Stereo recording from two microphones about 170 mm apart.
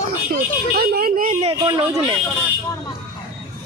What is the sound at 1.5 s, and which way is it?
Speech, 20° right (ahead or behind).